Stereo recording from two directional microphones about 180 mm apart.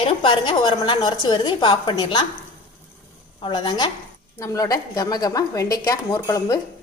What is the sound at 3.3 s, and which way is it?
A woman's voice, 25° left (ahead or behind).